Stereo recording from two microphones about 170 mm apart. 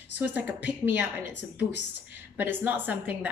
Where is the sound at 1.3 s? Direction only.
90° left.